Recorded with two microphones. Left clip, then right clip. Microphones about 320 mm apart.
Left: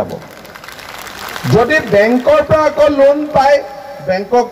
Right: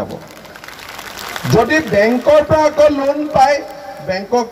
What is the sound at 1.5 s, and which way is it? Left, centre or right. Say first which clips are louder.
A man's voice: left 2 dB; right.